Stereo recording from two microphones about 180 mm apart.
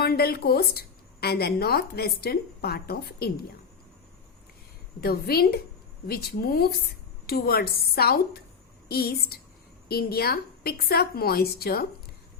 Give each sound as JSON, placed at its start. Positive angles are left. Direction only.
{"t": 0.0, "sound": "a woman's voice", "side_deg": 60}
{"t": 4.9, "sound": "a woman's voice", "side_deg": 60}